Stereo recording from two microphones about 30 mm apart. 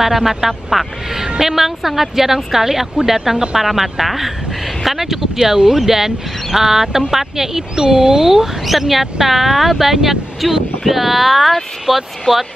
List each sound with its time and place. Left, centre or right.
0.0 s speech: centre
7.7 s speech: right
8.6 s speech: centre